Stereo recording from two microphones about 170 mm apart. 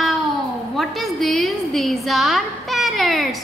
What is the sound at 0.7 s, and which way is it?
A woman's voice, centre (ahead or behind).